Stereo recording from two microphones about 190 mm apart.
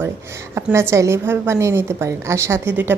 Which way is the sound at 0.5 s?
15° right (ahead or behind).